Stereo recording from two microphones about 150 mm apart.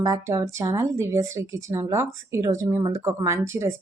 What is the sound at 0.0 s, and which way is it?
A woman's voice, 20° right (ahead or behind).